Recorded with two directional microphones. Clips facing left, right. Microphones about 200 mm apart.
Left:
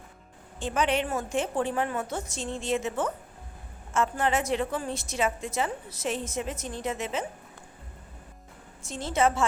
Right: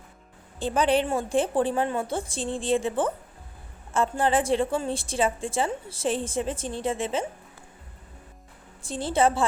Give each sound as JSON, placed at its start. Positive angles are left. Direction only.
{"t": 0.6, "sound": "a woman's voice", "side_deg": -35}
{"t": 8.8, "sound": "a woman's voice", "side_deg": -30}